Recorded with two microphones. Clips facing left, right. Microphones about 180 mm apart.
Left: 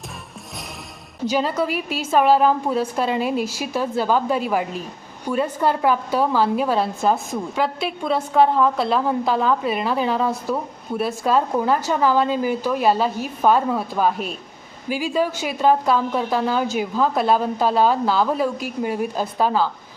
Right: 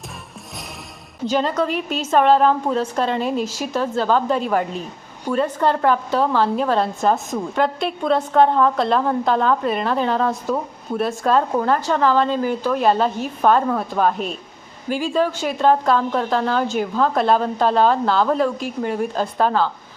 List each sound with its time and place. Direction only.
1.3 s a woman's voice: 10° left (ahead or behind)